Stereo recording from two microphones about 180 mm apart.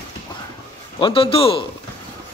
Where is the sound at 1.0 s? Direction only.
30° left (ahead or behind).